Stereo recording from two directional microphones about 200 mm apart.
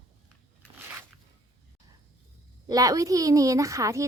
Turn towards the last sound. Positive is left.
turn(degrees=-15)  # may be behind; listen again after turning